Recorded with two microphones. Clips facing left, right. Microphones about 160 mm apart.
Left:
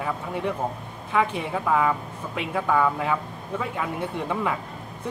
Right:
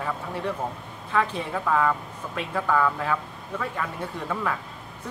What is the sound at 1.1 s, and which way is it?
A man's voice, 15° left (ahead or behind).